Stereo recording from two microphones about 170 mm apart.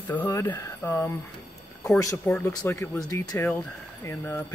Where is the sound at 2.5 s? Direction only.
15° left (ahead or behind).